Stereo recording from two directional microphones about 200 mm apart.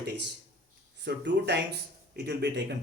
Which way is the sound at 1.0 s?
55° right (ahead or behind).